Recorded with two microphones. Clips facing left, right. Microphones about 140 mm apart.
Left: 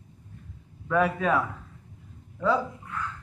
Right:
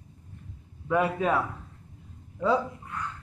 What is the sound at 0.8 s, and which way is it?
Speech, 15° right (ahead or behind).